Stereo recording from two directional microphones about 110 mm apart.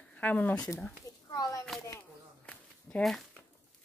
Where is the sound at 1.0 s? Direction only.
35° left (ahead or behind).